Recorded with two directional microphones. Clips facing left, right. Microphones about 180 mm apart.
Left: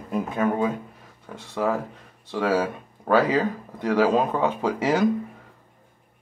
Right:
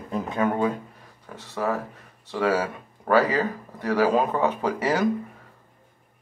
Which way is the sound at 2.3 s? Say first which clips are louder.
Left 1 dB; 20° left (ahead or behind).